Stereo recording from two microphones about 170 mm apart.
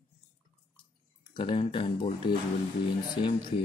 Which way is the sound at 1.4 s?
35° left (ahead or behind).